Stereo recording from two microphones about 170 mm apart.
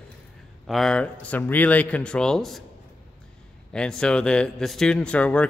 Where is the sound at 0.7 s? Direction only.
Centre (ahead or behind).